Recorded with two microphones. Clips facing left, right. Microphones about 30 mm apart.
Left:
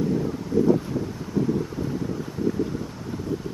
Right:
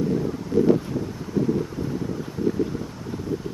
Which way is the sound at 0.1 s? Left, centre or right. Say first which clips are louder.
Right 1 dB; centre.